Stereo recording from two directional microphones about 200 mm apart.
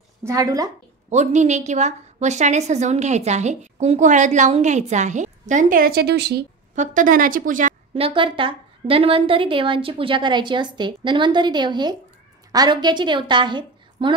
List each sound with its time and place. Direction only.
0.2 s a woman's voice: 15° right (ahead or behind)
1.1 s a woman's voice: 35° right (ahead or behind); by 6.4 s 55° right (ahead or behind)
6.7 s a woman's voice: 40° right (ahead or behind)
7.9 s a woman's voice: 25° right (ahead or behind)